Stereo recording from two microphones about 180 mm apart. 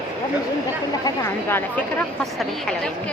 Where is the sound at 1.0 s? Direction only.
15° left (ahead or behind).